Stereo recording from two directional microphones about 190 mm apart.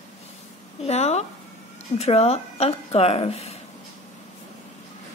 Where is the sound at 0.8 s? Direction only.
35° left (ahead or behind).